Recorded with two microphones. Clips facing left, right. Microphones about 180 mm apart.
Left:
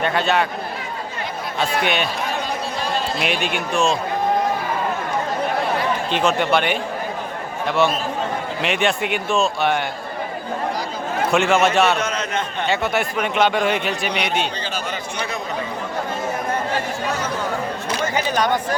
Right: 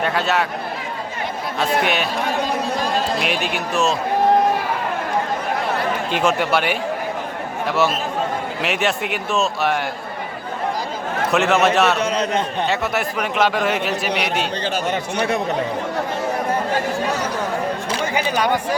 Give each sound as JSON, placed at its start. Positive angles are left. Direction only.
{"t": 0.0, "sound": "a man's voice", "side_deg": -5}
{"t": 1.5, "sound": "a man's voice", "side_deg": 0}
{"t": 3.2, "sound": "a man's voice", "side_deg": 0}
{"t": 6.1, "sound": "a man's voice", "side_deg": -10}
{"t": 11.3, "sound": "a man's voice", "side_deg": 0}
{"t": 11.9, "sound": "a man's voice", "side_deg": -35}
{"t": 12.6, "sound": "a man's voice", "side_deg": 0}
{"t": 18.0, "sound": "speech", "side_deg": -10}